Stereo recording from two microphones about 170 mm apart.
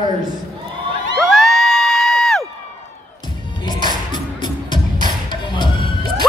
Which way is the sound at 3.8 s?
25° left (ahead or behind).